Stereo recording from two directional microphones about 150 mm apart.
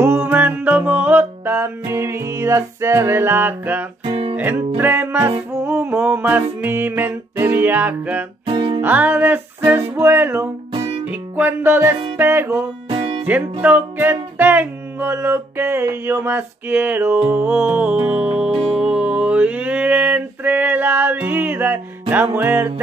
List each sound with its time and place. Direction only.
0.0 s music: 15° right (ahead or behind)
4.0 s guitar: 35° right (ahead or behind)
4.4 s music: 15° right (ahead or behind)
8.5 s music: 35° right (ahead or behind)
8.8 s music: 10° right (ahead or behind)
12.9 s music: 35° right (ahead or behind)
13.3 s music: 10° right (ahead or behind)
18.5 s music: 40° right (ahead or behind)
18.8 s a sound: 5° right (ahead or behind)
22.1 s music: 15° right (ahead or behind)